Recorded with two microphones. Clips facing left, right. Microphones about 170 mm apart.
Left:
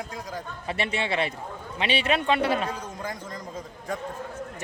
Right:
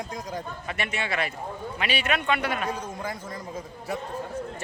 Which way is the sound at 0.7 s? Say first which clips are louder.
Left 4 dB; 30° left (ahead or behind).